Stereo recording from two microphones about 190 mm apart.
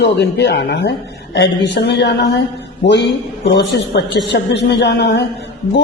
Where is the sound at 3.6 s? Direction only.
65° left (ahead or behind).